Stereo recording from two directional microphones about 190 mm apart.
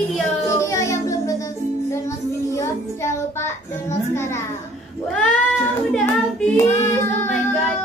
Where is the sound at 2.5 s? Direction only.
15° left (ahead or behind).